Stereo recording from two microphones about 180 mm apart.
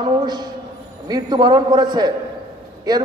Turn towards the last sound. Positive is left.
turn(degrees=-20)  # may be behind; listen again after turning